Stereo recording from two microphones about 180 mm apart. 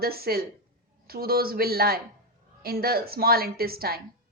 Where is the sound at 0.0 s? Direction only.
60° right (ahead or behind).